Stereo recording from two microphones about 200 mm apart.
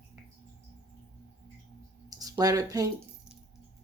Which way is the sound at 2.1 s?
20° right (ahead or behind).